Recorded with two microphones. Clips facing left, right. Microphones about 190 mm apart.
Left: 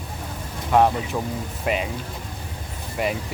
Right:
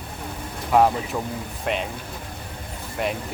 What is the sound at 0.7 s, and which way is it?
Speech, centre (ahead or behind).